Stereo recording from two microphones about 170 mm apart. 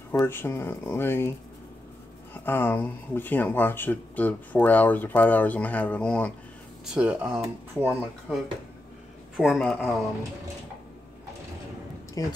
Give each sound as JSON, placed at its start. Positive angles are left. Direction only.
{"t": 0.1, "sound": "speech", "side_deg": 15}
{"t": 2.3, "sound": "speech", "side_deg": 10}
{"t": 6.9, "sound": "a man's voice", "side_deg": -5}
{"t": 12.2, "sound": "speech", "side_deg": 20}